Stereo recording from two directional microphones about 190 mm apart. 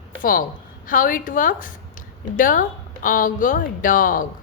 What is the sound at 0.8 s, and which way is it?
Speech, 45° left (ahead or behind).